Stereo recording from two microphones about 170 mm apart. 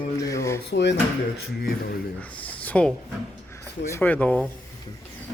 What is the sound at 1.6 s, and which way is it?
Speech, 65° left (ahead or behind).